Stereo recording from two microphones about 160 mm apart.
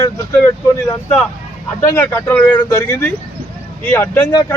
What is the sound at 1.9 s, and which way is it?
A man's voice, 15° left (ahead or behind).